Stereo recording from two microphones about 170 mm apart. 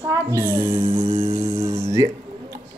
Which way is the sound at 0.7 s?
30° right (ahead or behind).